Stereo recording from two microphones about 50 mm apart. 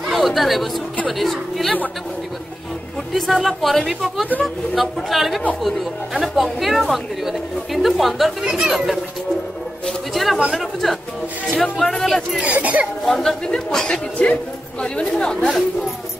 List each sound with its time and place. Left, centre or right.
0.0 s a woman's voice: centre
3.1 s a woman's voice: centre
12.4 s speech: right
13.0 s a man's voice: centre
14.1 s a man's voice: left